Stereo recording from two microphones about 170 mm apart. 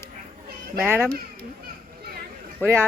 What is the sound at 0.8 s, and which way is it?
Speech, 10° right (ahead or behind).